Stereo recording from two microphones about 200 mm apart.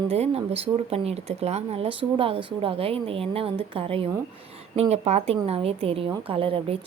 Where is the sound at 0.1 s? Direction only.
30° right (ahead or behind).